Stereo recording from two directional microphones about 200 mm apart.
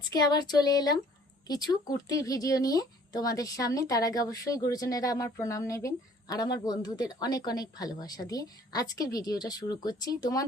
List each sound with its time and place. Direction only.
0.1 s speech: 20° left (ahead or behind)